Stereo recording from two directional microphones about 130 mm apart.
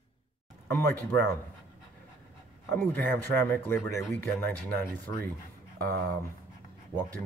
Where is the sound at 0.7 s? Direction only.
20° left (ahead or behind).